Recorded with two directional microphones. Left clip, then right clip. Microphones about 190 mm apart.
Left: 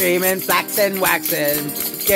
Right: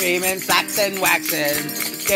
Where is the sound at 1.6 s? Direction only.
15° right (ahead or behind).